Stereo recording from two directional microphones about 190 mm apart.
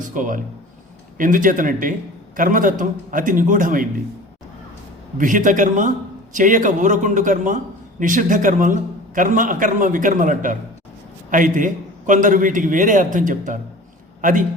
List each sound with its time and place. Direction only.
0.0 s a man's voice: 45° right (ahead or behind)
5.1 s a man's voice: 45° right (ahead or behind)